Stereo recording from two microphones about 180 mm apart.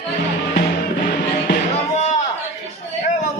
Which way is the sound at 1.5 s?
40° left (ahead or behind).